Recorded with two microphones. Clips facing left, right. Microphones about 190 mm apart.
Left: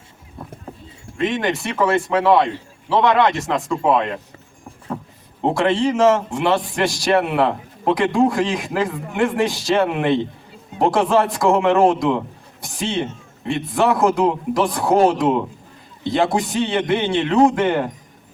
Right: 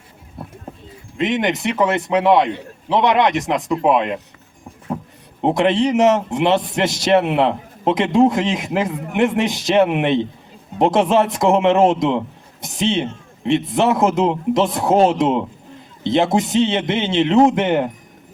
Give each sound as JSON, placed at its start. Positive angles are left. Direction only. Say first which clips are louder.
{"t": 1.1, "sound": "a man's voice", "louder": "right 1 dB", "side_deg": -20}
{"t": 5.4, "sound": "a man's voice", "louder": "right 2 dB", "side_deg": -20}